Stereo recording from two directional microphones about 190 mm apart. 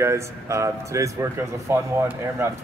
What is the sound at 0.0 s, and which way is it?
Speech, 15° right (ahead or behind).